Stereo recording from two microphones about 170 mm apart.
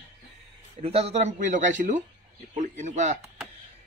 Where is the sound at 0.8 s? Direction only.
35° right (ahead or behind).